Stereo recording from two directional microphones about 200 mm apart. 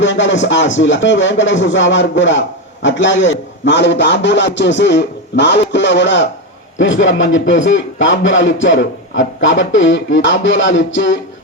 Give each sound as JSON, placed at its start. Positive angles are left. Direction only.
{"t": 0.0, "sound": "a man's voice", "side_deg": 65}